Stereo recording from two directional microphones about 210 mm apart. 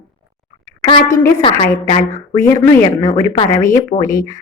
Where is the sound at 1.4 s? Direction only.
20° left (ahead or behind).